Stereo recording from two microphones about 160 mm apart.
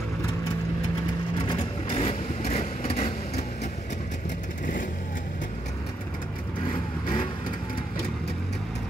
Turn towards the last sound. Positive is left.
turn(degrees=30)  # may be behind; listen again after turning